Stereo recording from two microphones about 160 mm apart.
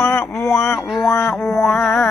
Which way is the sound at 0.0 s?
15° left (ahead or behind).